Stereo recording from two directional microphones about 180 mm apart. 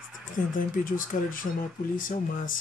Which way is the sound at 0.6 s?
50° left (ahead or behind).